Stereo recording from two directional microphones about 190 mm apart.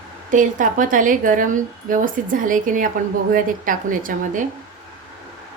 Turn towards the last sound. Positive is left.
turn(degrees=-45)  # may be behind; listen again after turning